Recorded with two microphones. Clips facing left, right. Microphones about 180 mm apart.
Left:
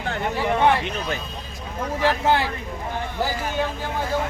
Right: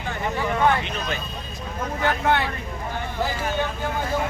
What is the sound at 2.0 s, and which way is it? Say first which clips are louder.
Speech: left 2 dB; 30° left (ahead or behind).